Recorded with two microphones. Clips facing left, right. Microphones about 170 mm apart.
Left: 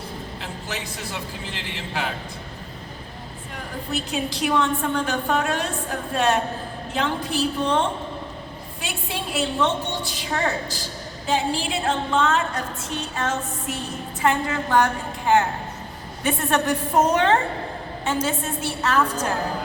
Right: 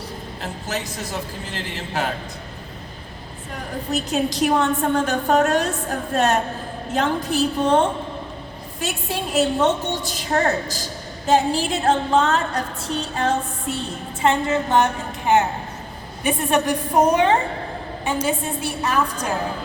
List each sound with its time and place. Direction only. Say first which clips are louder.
0.4 s a woman's voice: right 7 dB; 40° right (ahead or behind)
3.9 s a woman's voice: right 5 dB; 40° right (ahead or behind); by 19.3 s 15° right (ahead or behind)